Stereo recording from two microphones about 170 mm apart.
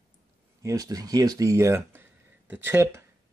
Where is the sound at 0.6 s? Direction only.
20° right (ahead or behind).